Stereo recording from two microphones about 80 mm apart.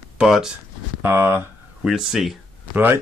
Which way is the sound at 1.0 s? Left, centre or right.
Right.